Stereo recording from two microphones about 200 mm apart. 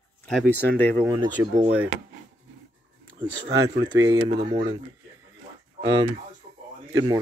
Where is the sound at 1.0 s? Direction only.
15° right (ahead or behind).